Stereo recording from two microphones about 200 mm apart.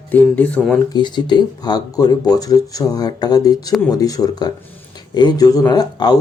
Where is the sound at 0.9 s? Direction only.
20° left (ahead or behind).